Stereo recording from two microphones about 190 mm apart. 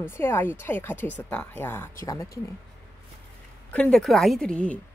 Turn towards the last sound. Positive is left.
turn(degrees=5)  # may be behind; listen again after turning